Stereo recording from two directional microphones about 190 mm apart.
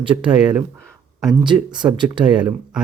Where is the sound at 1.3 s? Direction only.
25° right (ahead or behind).